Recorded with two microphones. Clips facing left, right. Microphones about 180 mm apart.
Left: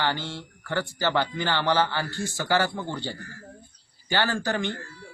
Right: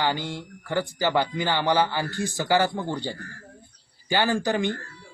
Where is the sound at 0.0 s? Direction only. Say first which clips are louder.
Right 2 dB; 15° right (ahead or behind).